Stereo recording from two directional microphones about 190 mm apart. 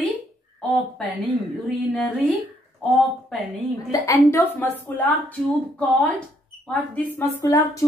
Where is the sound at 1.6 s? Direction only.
Centre (ahead or behind).